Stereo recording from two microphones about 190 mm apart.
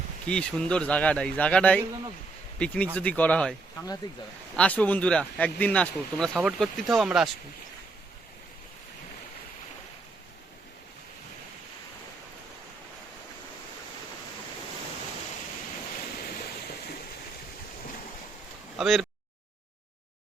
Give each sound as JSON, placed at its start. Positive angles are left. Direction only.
{"t": 0.3, "sound": "speech", "side_deg": 5}
{"t": 4.0, "sound": "speech", "side_deg": 20}
{"t": 4.5, "sound": "speech", "side_deg": 5}
{"t": 18.8, "sound": "speech", "side_deg": 0}